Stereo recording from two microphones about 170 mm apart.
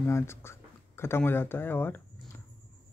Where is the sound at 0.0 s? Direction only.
15° left (ahead or behind).